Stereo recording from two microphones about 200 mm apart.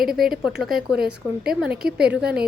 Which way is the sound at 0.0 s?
Centre (ahead or behind).